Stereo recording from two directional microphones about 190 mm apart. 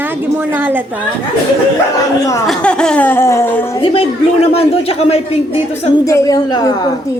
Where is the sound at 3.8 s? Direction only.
30° left (ahead or behind).